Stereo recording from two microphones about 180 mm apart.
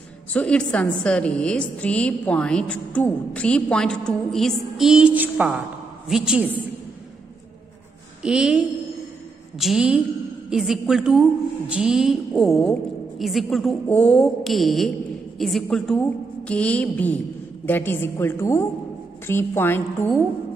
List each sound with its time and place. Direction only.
0.3 s a woman's voice: 5° left (ahead or behind)
8.2 s a woman's voice: 5° right (ahead or behind); by 20.1 s 15° left (ahead or behind)